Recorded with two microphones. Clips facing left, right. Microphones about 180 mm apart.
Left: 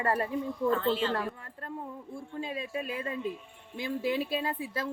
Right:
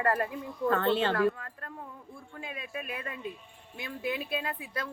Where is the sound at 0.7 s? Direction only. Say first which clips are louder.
Right 2 dB; 65° right (ahead or behind).